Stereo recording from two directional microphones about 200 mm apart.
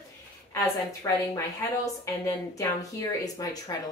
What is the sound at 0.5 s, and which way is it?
A woman's voice, 15° left (ahead or behind).